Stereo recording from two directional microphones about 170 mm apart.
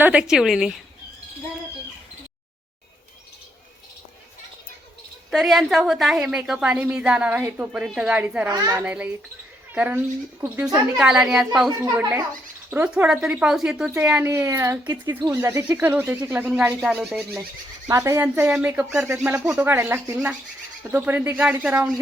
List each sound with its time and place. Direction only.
0.0 s a woman's voice: 5° right (ahead or behind)
5.3 s a woman's voice: centre (ahead or behind)
8.4 s a child's voice: 25° right (ahead or behind)
8.7 s speech: 10° right (ahead or behind)
10.9 s a woman's voice: 5° right (ahead or behind)
11.8 s a woman's voice: 15° right (ahead or behind)
17.8 s speech: 20° right (ahead or behind)